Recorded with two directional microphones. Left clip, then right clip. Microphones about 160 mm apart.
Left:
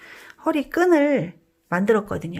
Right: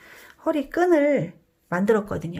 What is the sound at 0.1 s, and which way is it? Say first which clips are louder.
Speech: left 1 dB; 20° left (ahead or behind).